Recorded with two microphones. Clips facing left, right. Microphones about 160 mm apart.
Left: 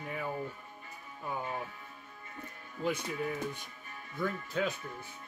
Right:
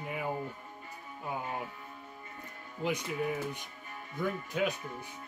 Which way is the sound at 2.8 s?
15° right (ahead or behind).